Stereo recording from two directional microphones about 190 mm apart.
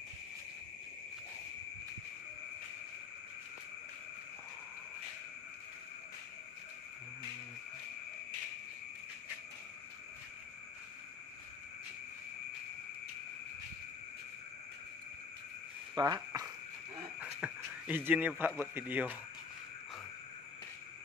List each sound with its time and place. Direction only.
15.9 s cricket: 20° right (ahead or behind)
17.2 s a sound: 10° right (ahead or behind)
18.6 s a man's voice: 10° right (ahead or behind)